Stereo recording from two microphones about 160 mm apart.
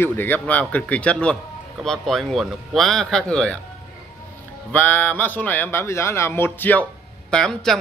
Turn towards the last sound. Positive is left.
turn(degrees=5)  # may be behind; listen again after turning